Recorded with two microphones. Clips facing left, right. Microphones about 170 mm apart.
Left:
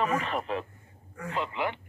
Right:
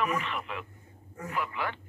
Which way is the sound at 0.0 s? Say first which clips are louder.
Left 3 dB; 35° left (ahead or behind).